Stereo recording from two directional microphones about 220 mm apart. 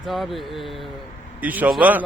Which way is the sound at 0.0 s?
Centre (ahead or behind).